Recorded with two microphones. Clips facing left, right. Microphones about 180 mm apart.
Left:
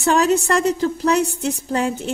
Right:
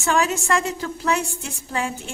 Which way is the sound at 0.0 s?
35° left (ahead or behind).